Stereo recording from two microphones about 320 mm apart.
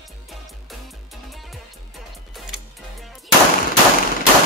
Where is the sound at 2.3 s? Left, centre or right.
Centre.